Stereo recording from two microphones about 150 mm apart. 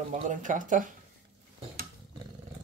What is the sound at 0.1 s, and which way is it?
Speech, 60° right (ahead or behind).